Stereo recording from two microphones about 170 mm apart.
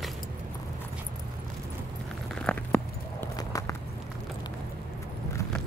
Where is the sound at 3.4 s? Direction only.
20° left (ahead or behind).